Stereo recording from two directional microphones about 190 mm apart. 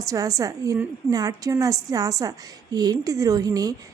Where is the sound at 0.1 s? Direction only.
15° right (ahead or behind).